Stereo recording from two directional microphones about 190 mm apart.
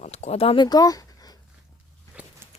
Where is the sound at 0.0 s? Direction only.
35° left (ahead or behind); by 1.4 s 20° left (ahead or behind).